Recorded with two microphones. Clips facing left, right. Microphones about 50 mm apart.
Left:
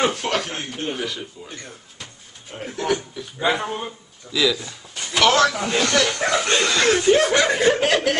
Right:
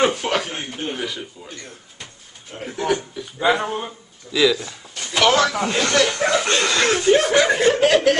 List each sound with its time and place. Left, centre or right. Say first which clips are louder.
0.0 s speech: right 2 dB; centre
2.5 s speech: right 1 dB; centre
5.1 s speech: even; centre
6.0 s chuckle: right 2 dB; centre
6.3 s speech: right 1 dB; centre
6.6 s speech: even; centre